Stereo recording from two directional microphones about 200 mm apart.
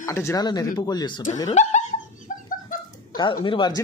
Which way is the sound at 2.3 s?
40° left (ahead or behind).